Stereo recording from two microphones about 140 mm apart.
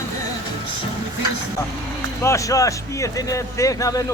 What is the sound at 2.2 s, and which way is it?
Speech, 20° left (ahead or behind).